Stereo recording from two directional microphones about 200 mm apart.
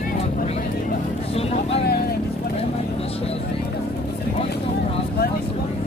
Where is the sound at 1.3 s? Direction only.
30° left (ahead or behind).